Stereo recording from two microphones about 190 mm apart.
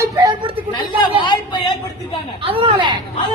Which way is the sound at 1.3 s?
20° left (ahead or behind).